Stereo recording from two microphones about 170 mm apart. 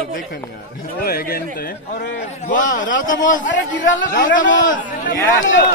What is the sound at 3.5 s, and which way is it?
Speech, 90° left.